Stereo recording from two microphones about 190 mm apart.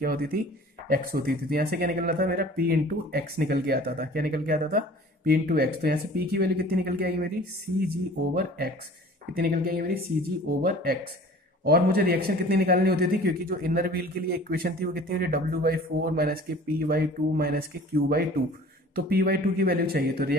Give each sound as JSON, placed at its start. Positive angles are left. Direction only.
{"t": 0.0, "sound": "a man's voice", "side_deg": -50}
{"t": 8.4, "sound": "a man's voice", "side_deg": -55}